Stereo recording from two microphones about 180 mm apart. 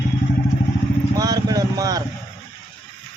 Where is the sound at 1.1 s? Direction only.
20° right (ahead or behind).